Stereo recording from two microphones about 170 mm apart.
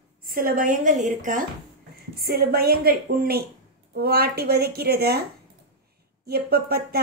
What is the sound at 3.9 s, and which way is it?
Speech, 65° right (ahead or behind).